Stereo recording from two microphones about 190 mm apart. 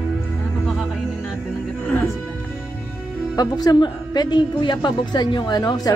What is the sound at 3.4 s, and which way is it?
A woman's voice, 20° left (ahead or behind).